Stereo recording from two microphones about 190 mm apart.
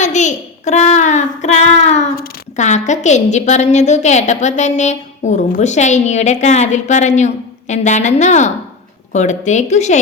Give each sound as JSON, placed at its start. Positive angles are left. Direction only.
{"t": 0.0, "sound": "a child's voice", "side_deg": 40}